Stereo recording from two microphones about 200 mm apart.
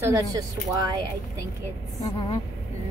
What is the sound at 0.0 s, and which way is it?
Speech, 15° right (ahead or behind).